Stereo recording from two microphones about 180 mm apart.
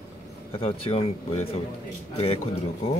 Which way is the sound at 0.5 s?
30° left (ahead or behind).